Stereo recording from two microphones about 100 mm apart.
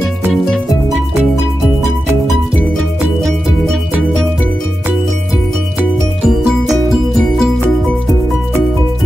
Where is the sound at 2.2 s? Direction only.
Centre (ahead or behind).